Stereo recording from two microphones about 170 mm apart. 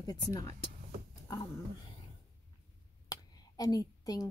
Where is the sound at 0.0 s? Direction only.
20° left (ahead or behind).